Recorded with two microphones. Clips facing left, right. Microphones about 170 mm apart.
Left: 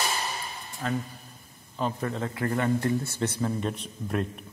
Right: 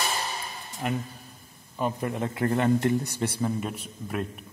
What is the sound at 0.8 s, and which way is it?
Speech, 15° right (ahead or behind).